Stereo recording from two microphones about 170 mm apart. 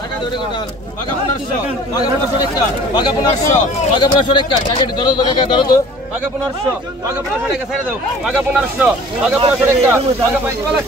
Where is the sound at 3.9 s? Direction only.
25° left (ahead or behind).